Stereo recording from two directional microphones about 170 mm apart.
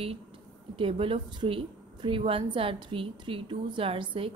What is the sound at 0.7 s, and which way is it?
A woman's voice, 30° right (ahead or behind).